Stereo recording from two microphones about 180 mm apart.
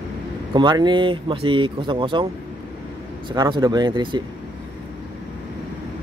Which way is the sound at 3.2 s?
25° right (ahead or behind).